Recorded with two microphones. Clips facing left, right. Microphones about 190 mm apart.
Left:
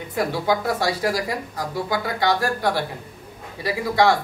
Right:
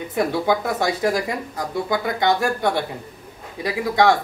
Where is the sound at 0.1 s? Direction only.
20° right (ahead or behind).